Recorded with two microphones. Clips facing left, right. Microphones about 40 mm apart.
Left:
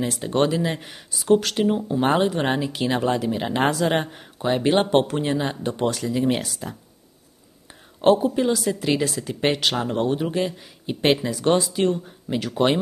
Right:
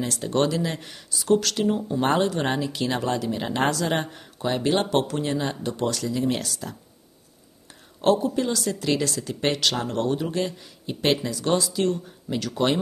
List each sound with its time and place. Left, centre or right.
0.0 s speech: centre
1.8 s speech: centre
8.0 s speech: left